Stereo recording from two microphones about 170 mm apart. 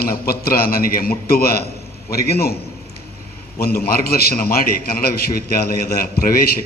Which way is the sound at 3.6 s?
65° left (ahead or behind).